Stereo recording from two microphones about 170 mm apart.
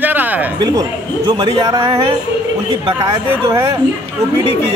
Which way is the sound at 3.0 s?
15° right (ahead or behind).